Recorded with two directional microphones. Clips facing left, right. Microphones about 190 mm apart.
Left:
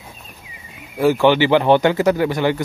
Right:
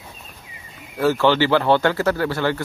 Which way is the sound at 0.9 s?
15° left (ahead or behind).